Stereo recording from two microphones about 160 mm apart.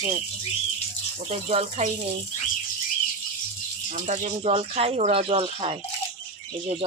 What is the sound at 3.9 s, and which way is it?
Speech, 50° right (ahead or behind).